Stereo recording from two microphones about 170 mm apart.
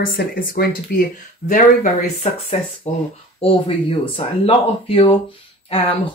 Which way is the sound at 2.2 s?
35° left (ahead or behind).